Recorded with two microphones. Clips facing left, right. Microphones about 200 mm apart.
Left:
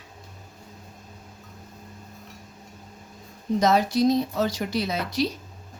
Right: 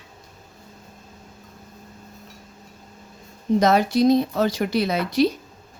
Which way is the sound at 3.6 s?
60° right (ahead or behind).